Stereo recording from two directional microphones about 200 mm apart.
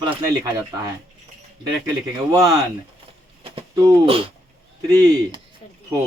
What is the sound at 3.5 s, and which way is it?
Speech, 25° right (ahead or behind).